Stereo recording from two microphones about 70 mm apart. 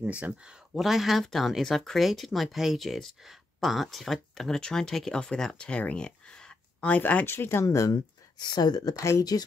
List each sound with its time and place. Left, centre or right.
0.0 s speech: centre
0.7 s speech: centre; by 7.2 s left
7.2 s speech: left
7.6 s speech: left
8.4 s speech: left
8.9 s speech: left
9.2 s speech: left